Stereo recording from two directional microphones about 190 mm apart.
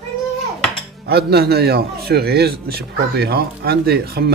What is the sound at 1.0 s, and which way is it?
Speech, 55° right (ahead or behind).